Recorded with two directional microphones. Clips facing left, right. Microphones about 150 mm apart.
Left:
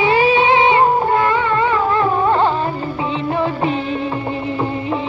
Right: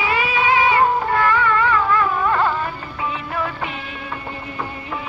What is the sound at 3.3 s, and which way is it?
Music, 25° left (ahead or behind).